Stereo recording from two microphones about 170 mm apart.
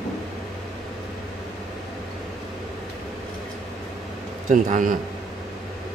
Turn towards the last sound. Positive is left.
turn(degrees=-50)  # may be behind; listen again after turning